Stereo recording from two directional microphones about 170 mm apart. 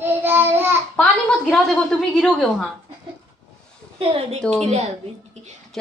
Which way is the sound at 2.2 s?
Centre (ahead or behind).